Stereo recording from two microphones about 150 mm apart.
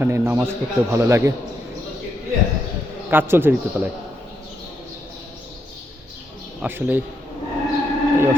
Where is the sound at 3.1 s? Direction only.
15° right (ahead or behind).